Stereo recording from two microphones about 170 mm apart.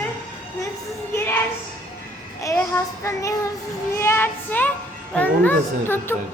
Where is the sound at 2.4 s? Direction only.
20° left (ahead or behind).